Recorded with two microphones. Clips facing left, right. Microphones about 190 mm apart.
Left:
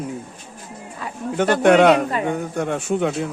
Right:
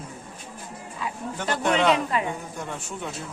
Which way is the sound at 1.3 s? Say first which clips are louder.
Left 11 dB; 70° left (ahead or behind).